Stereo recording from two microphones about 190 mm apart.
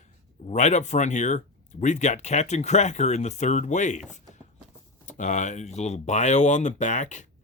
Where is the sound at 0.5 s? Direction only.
40° left (ahead or behind).